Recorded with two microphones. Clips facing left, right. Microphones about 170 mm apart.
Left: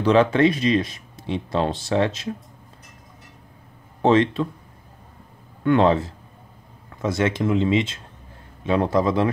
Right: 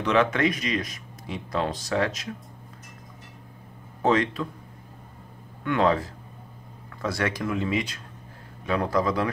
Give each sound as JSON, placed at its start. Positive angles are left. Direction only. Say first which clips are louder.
{"t": 0.0, "sound": "speech", "louder": "left 6 dB", "side_deg": 30}
{"t": 4.0, "sound": "speech", "louder": "left 5 dB", "side_deg": 25}
{"t": 5.6, "sound": "speech", "louder": "left 5 dB", "side_deg": 25}